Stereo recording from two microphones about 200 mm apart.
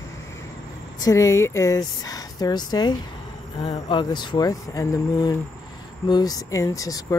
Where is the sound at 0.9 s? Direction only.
15° left (ahead or behind).